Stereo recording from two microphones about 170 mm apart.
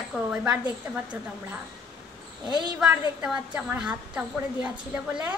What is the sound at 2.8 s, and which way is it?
A woman's voice, 5° right (ahead or behind).